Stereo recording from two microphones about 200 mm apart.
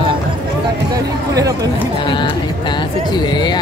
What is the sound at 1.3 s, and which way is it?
Speech, 15° right (ahead or behind).